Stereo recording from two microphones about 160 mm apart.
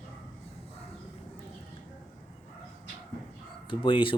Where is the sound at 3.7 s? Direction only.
35° left (ahead or behind).